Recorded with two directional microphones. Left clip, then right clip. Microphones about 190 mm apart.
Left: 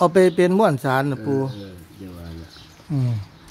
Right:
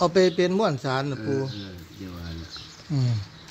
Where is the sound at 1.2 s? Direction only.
15° left (ahead or behind).